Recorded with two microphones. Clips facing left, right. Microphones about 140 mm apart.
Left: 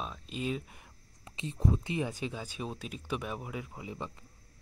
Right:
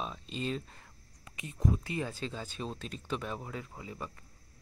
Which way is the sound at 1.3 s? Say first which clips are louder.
Left 1 dB; 30° left (ahead or behind).